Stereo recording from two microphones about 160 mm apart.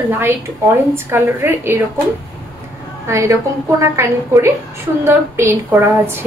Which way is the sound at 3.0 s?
20° right (ahead or behind).